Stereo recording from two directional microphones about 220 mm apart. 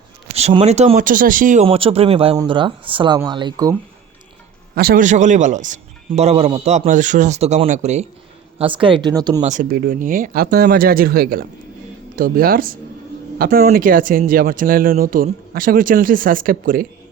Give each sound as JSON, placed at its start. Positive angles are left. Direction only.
{"t": 0.3, "sound": "speech", "side_deg": -30}
{"t": 1.6, "sound": "speech", "side_deg": -25}
{"t": 4.7, "sound": "speech", "side_deg": -45}
{"t": 8.8, "sound": "speech", "side_deg": -20}
{"t": 9.4, "sound": "speech", "side_deg": -35}